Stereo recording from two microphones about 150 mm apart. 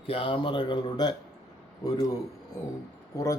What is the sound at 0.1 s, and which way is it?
Speech, 35° left (ahead or behind).